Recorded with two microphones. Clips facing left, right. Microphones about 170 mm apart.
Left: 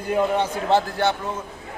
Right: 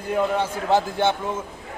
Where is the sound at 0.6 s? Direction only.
15° right (ahead or behind).